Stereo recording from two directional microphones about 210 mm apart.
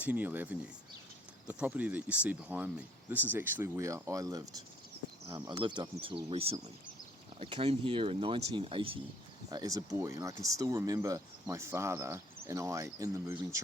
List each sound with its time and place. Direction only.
0.0 s speech: 5° right (ahead or behind)